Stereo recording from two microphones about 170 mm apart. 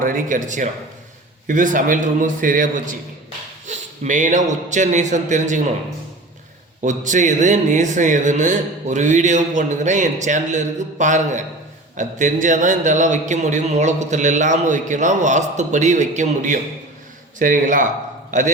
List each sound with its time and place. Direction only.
0.0 s speech: 50° right (ahead or behind)
6.8 s a man's voice: 45° right (ahead or behind)